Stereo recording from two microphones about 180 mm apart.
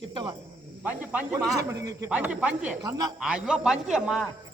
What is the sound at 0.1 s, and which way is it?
Speech, 25° right (ahead or behind).